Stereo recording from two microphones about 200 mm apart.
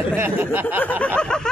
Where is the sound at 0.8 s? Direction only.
5° left (ahead or behind).